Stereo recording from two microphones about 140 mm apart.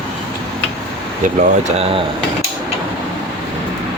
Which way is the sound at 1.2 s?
60° right (ahead or behind).